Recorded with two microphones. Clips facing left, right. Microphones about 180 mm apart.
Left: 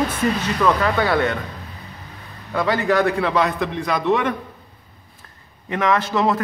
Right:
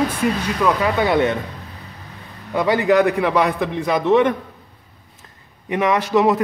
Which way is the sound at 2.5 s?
15° right (ahead or behind).